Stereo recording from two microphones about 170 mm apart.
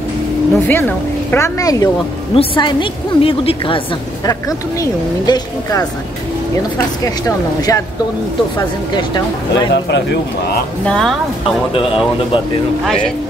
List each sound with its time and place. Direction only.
0.6 s a woman's voice: 15° left (ahead or behind); by 3.8 s 30° left (ahead or behind)
4.3 s speech: 20° left (ahead or behind)
7.2 s speech: 20° left (ahead or behind)
8.9 s speech: 25° left (ahead or behind)
10.9 s speech: 5° left (ahead or behind)
11.7 s a woman's voice: 30° left (ahead or behind)
12.8 s speech: 5° left (ahead or behind)